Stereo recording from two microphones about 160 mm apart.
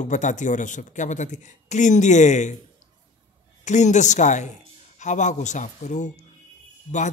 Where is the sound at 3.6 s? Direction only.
50° left (ahead or behind).